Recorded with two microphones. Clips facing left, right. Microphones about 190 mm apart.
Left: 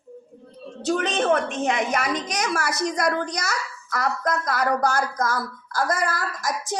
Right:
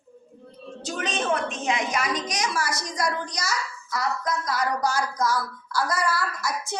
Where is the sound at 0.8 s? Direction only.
60° left (ahead or behind).